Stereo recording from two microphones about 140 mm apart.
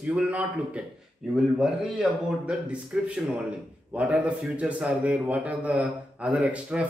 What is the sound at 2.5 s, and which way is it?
A man's voice, 10° right (ahead or behind).